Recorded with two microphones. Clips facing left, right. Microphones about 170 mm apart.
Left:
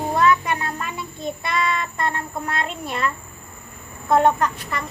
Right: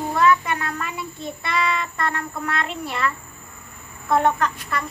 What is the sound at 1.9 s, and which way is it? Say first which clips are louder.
Speech: left 1 dB; 20° left (ahead or behind).